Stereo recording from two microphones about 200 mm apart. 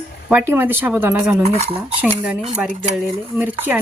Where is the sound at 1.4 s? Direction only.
35° right (ahead or behind).